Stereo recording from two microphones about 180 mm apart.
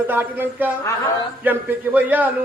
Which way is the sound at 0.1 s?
10° right (ahead or behind).